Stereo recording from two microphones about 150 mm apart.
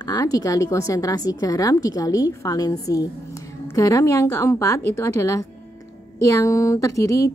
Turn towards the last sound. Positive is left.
turn(degrees=20)  # may be behind; listen again after turning